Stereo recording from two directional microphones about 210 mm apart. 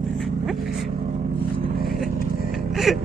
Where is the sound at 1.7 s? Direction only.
45° right (ahead or behind).